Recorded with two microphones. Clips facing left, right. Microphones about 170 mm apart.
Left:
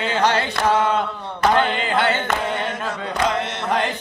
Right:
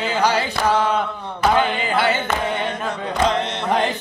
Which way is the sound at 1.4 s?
10° right (ahead or behind).